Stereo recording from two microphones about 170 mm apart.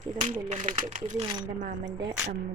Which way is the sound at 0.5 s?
45° right (ahead or behind).